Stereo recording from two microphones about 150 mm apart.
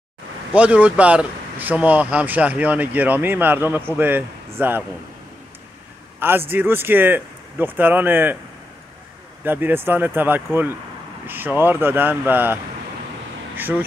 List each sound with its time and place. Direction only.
0.6 s speech: 10° right (ahead or behind)
6.1 s speech: 15° right (ahead or behind)
9.4 s speech: 15° right (ahead or behind)
13.6 s speech: 10° right (ahead or behind)